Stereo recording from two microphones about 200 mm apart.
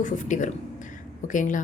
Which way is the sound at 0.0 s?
40° left (ahead or behind).